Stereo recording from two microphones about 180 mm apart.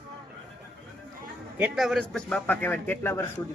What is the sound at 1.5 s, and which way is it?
A man's voice, 5° right (ahead or behind).